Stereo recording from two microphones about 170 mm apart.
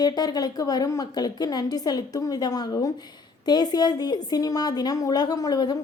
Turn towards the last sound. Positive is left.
turn(degrees=25)  # may be behind; listen again after turning